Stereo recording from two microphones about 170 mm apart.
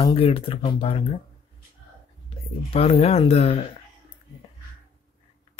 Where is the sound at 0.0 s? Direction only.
30° left (ahead or behind).